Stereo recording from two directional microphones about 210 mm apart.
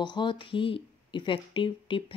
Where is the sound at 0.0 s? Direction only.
20° left (ahead or behind).